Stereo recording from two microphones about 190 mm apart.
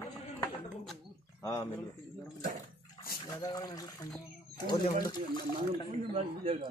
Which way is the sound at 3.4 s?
20° left (ahead or behind).